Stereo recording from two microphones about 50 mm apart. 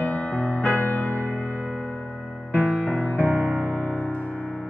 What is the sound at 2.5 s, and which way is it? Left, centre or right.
Music, left.